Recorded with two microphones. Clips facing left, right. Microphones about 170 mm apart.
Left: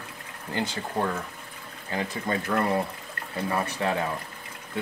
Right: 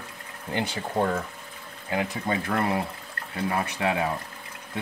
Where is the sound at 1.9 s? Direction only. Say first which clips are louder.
Right 2 dB; 15° right (ahead or behind).